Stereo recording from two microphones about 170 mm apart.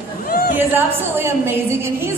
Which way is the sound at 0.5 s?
15° right (ahead or behind).